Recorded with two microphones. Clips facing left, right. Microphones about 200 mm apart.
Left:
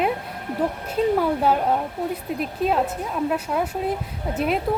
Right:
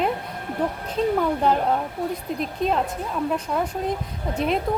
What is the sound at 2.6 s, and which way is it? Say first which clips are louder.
Speech: left 2 dB; 5° left (ahead or behind).